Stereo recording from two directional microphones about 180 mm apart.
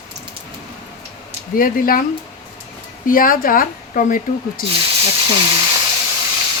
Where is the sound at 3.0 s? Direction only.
50° left (ahead or behind).